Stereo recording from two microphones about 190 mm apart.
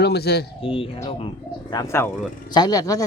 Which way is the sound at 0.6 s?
30° left (ahead or behind).